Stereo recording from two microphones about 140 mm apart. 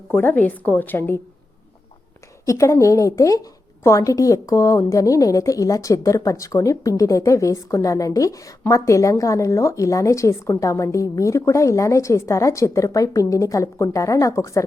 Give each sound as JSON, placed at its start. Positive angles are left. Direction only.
{"t": 0.1, "sound": "a woman's voice", "side_deg": 15}
{"t": 2.5, "sound": "a woman's voice", "side_deg": 20}